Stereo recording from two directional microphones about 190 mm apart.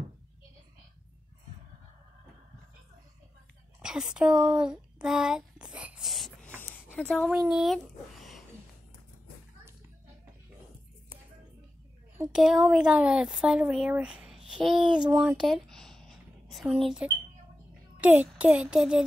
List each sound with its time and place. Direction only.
3.8 s speech: 5° right (ahead or behind)
12.3 s speech: 5° right (ahead or behind)
14.8 s speech: 25° right (ahead or behind)
15.0 s a sound: 5° right (ahead or behind)
18.0 s speech: 10° right (ahead or behind)